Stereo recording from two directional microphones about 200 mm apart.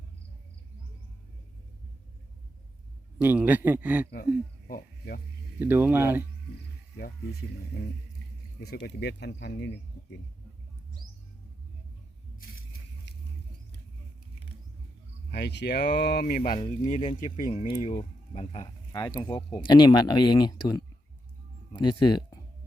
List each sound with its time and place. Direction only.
3.2 s a man's voice: 10° right (ahead or behind)
4.7 s speech: 50° left (ahead or behind)
5.5 s a man's voice: 10° right (ahead or behind)
6.9 s speech: 55° left (ahead or behind)
15.3 s speech: 55° left (ahead or behind); by 18.7 s 30° left (ahead or behind)
18.9 s speech: 20° left (ahead or behind)